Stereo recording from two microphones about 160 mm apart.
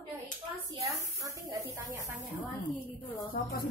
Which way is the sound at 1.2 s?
20° right (ahead or behind).